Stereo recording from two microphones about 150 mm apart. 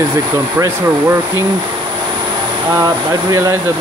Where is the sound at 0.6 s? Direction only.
20° right (ahead or behind).